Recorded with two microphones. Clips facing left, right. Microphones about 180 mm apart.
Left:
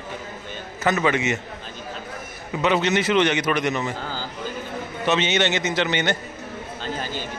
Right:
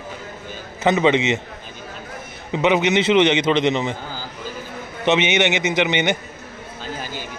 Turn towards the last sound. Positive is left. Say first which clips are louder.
# left 1 dB
turn(degrees=-10)  # may be behind; listen again after turning